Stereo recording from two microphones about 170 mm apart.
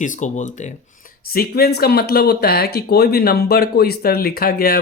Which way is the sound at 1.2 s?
60° left (ahead or behind).